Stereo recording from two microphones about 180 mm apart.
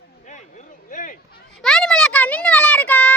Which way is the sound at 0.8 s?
45° left (ahead or behind).